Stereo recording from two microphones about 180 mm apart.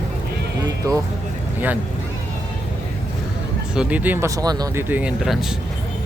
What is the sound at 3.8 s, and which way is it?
Speech, 10° right (ahead or behind).